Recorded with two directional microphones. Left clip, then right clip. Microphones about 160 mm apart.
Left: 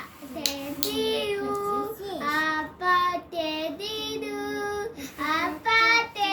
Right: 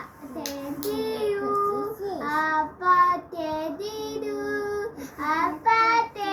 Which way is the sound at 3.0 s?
35° left (ahead or behind).